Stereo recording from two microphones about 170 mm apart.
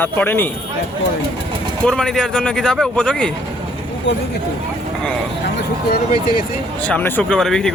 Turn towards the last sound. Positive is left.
turn(degrees=5)  # may be behind; listen again after turning